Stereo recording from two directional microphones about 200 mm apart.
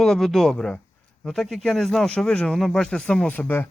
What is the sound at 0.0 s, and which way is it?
Speech, centre (ahead or behind).